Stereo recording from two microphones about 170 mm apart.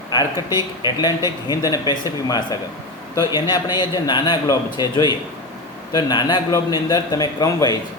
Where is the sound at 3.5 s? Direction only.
25° left (ahead or behind).